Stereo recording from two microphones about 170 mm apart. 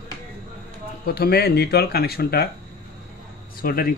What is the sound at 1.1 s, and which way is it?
A man's voice, 65° left (ahead or behind).